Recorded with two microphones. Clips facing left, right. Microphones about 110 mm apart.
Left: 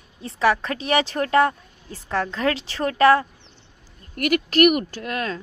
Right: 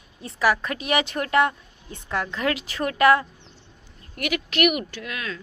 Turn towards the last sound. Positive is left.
turn(degrees=45)  # may be behind; listen again after turning